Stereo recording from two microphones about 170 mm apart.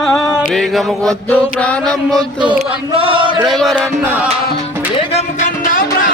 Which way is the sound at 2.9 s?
30° right (ahead or behind).